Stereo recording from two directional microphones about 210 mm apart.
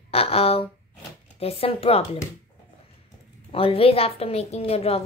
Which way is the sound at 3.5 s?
25° left (ahead or behind).